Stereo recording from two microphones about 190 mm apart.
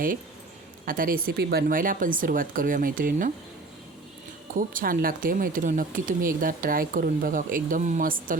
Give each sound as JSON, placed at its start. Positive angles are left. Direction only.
{"t": 0.9, "sound": "speech", "side_deg": -45}
{"t": 4.5, "sound": "speech", "side_deg": -45}